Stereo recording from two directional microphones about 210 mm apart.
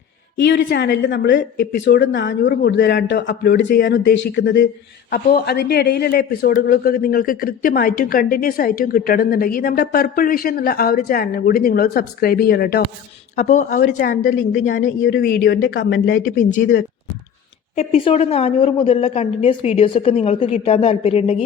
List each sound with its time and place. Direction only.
0.3 s a woman's voice: 55° left (ahead or behind)
5.1 s a man's voice: 50° left (ahead or behind)
13.3 s a woman's voice: 35° left (ahead or behind)
17.7 s a woman's voice: 30° left (ahead or behind)